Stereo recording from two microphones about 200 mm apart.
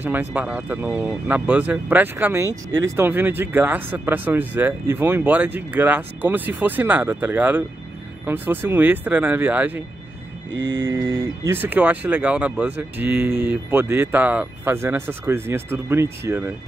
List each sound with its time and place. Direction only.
0.0 s speech: 10° right (ahead or behind)
10.5 s mantra: 65° right (ahead or behind)
10.9 s speech: 15° right (ahead or behind)